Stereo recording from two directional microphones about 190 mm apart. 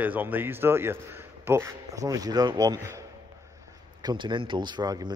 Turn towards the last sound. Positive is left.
turn(degrees=-20)  # may be behind; listen again after turning